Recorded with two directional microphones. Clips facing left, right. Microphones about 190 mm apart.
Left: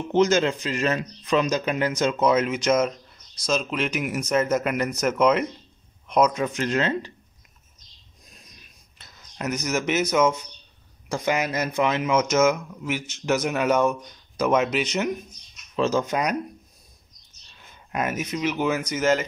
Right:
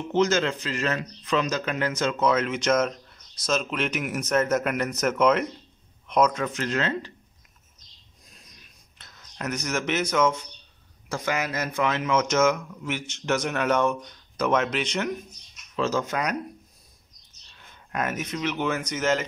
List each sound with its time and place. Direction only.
0.1 s speech: 15° left (ahead or behind)
6.3 s speech: 15° left (ahead or behind)
8.9 s speech: 5° left (ahead or behind)
15.7 s speech: 20° left (ahead or behind)
17.9 s speech: 10° left (ahead or behind)